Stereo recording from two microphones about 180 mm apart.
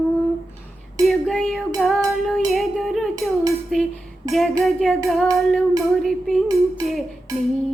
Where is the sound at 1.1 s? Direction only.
Centre (ahead or behind).